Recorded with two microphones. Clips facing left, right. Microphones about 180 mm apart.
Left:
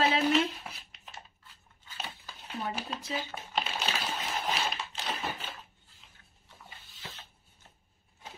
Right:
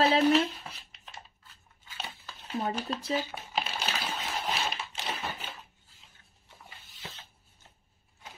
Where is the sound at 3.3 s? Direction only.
5° right (ahead or behind).